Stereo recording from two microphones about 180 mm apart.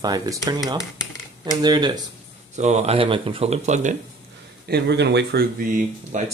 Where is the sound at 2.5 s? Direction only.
40° right (ahead or behind).